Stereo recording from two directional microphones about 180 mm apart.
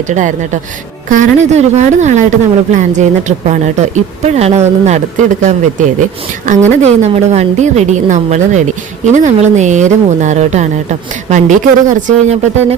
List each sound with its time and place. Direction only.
0.1 s a woman's voice: 45° right (ahead or behind)